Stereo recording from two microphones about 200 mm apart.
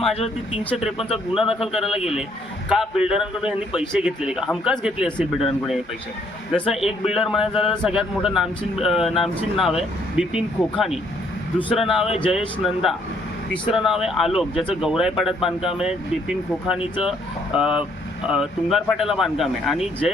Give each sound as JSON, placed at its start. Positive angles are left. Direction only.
{"t": 0.9, "sound": "speech", "side_deg": 30}
{"t": 1.4, "sound": "speech", "side_deg": 0}
{"t": 6.5, "sound": "speech", "side_deg": 0}
{"t": 12.0, "sound": "speech", "side_deg": 30}
{"t": 12.6, "sound": "speech", "side_deg": 0}